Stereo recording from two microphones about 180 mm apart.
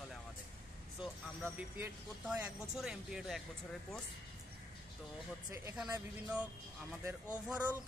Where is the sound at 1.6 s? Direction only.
10° right (ahead or behind).